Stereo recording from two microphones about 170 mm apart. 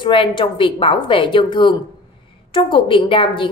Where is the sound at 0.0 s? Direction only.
30° left (ahead or behind).